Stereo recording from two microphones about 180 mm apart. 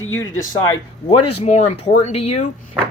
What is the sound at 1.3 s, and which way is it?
Speech, 35° left (ahead or behind).